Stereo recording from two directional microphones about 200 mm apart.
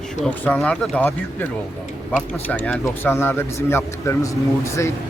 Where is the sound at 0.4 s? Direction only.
5° left (ahead or behind).